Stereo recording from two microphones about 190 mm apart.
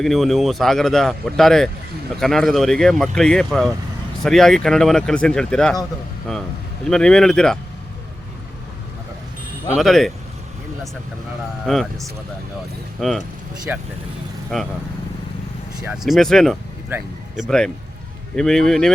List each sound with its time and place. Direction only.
0.0 s speech: centre (ahead or behind)
6.8 s speech: 5° left (ahead or behind)
9.7 s speech: centre (ahead or behind)
11.6 s speech: centre (ahead or behind)
13.7 s speech: 10° right (ahead or behind)
14.5 s speech: centre (ahead or behind)
15.9 s speech: centre (ahead or behind)